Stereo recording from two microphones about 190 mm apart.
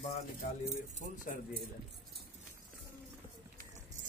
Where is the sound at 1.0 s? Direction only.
45° left (ahead or behind).